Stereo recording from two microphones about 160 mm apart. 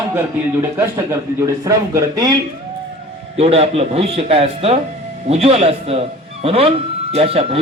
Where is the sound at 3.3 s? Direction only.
40° right (ahead or behind).